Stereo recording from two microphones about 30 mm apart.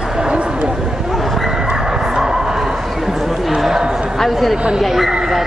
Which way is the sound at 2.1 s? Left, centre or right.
Right.